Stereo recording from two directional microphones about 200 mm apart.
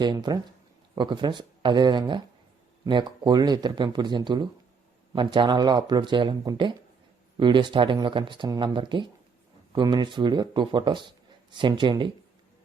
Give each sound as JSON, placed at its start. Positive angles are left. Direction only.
{"t": 0.0, "sound": "speech", "side_deg": -20}